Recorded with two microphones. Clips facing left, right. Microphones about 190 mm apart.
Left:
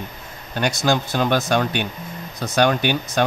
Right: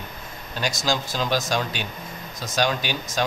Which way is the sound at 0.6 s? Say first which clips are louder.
Left 6 dB; 60° left (ahead or behind).